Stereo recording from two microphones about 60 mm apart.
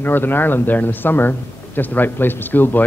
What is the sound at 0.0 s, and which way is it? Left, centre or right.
A man's voice, left.